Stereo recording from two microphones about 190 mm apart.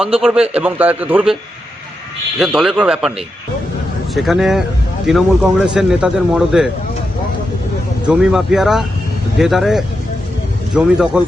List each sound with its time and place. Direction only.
0.0 s a man's voice: 5° right (ahead or behind)
2.4 s speech: centre (ahead or behind)
4.1 s speech: centre (ahead or behind)
8.0 s speech: 5° right (ahead or behind)